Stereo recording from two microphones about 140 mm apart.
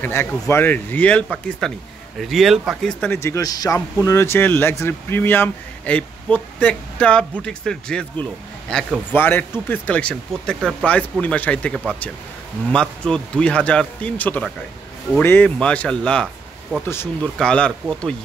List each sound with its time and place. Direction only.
0.0 s speech: 15° left (ahead or behind); by 2.9 s centre (ahead or behind)
3.0 s speech: 15° left (ahead or behind)
9.1 s speech: 15° left (ahead or behind)
13.0 s speech: 5° left (ahead or behind)